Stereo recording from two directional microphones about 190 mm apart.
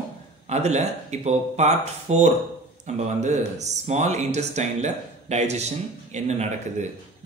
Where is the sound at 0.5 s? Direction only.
35° right (ahead or behind).